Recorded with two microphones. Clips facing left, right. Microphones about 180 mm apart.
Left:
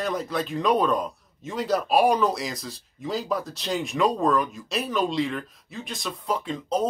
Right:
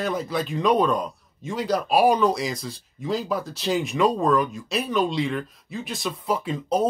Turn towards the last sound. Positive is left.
turn(degrees=-10)  # may be behind; listen again after turning